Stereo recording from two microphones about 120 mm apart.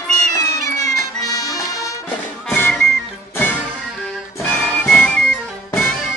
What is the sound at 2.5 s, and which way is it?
Music, 15° left (ahead or behind).